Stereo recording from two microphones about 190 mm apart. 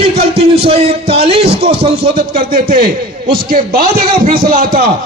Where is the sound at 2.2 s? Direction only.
55° right (ahead or behind).